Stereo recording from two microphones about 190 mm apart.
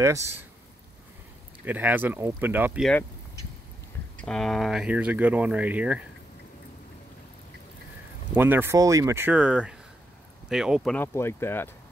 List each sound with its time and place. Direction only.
0.0 s speech: 15° right (ahead or behind)
1.7 s speech: 10° right (ahead or behind)
2.8 s speech: 5° left (ahead or behind)
4.2 s speech: 5° left (ahead or behind)
8.4 s speech: 10° right (ahead or behind)
11.0 s speech: 15° left (ahead or behind)